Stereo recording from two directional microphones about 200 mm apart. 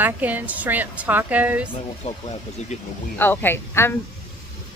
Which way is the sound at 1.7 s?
30° left (ahead or behind).